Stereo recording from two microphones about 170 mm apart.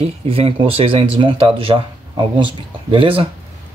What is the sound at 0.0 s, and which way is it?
Speech, 35° right (ahead or behind).